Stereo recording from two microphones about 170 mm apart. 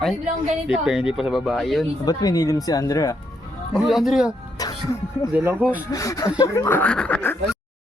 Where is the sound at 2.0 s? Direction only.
20° left (ahead or behind).